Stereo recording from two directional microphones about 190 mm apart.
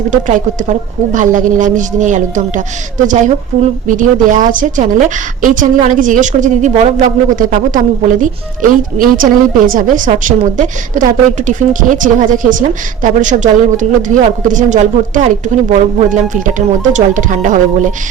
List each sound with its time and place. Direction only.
0.1 s a woman's voice: 40° right (ahead or behind)